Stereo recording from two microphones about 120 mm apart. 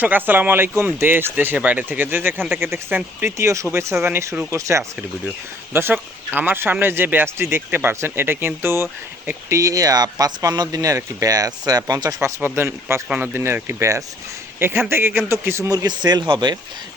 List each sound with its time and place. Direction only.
0.0 s speech: 15° right (ahead or behind); by 12.3 s 30° right (ahead or behind)
12.5 s speech: 20° right (ahead or behind); by 16.6 s 40° right (ahead or behind)